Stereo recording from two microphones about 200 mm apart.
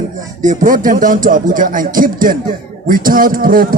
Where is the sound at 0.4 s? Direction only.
40° right (ahead or behind).